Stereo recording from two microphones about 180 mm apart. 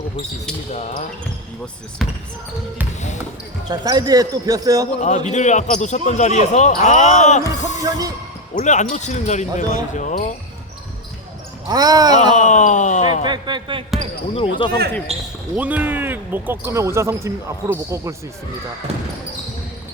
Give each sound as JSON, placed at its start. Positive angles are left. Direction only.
{"t": 0.7, "sound": "speech", "side_deg": 40}
{"t": 2.0, "sound": "speech", "side_deg": 0}
{"t": 3.7, "sound": "speech", "side_deg": -20}
{"t": 5.0, "sound": "speech", "side_deg": 40}
{"t": 7.8, "sound": "speech", "side_deg": -20}
{"t": 8.5, "sound": "speech", "side_deg": 40}
{"t": 11.7, "sound": "speech", "side_deg": -20}
{"t": 12.1, "sound": "speech", "side_deg": 40}
{"t": 13.2, "sound": "speech", "side_deg": -25}
{"t": 14.3, "sound": "speech", "side_deg": 30}
{"t": 15.5, "sound": "speech", "side_deg": -10}
{"t": 18.9, "sound": "speech", "side_deg": -35}